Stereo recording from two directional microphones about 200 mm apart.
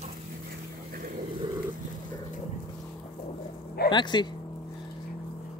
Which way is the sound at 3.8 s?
25° left (ahead or behind).